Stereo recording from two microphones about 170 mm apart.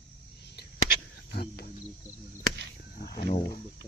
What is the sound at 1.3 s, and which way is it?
Cricket, 65° left (ahead or behind).